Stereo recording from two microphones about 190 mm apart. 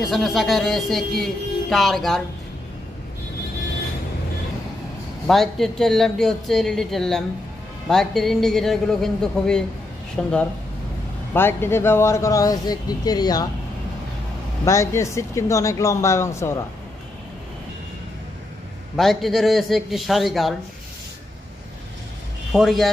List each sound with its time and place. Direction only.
0.0 s speech: centre (ahead or behind)
5.2 s speech: centre (ahead or behind)
11.3 s speech: 10° left (ahead or behind)
14.6 s speech: 15° left (ahead or behind)
18.9 s speech: centre (ahead or behind)
22.5 s speech: centre (ahead or behind)